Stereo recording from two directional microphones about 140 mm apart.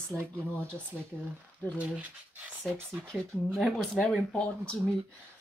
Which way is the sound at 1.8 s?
10° right (ahead or behind).